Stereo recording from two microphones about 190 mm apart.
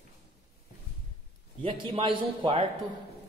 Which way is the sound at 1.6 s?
30° right (ahead or behind).